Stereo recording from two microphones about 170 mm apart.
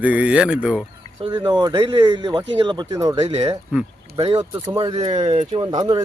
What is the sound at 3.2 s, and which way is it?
Speech, 35° right (ahead or behind).